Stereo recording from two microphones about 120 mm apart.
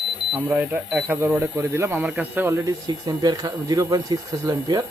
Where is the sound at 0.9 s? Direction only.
5° right (ahead or behind).